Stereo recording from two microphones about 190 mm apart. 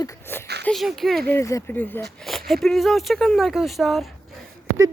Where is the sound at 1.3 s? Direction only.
15° left (ahead or behind).